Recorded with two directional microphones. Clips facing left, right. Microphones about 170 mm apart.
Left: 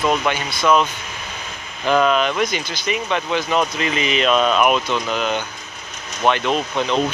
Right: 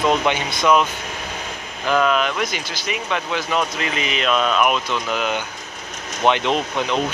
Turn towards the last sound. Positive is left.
turn(degrees=-15)  # may be behind; listen again after turning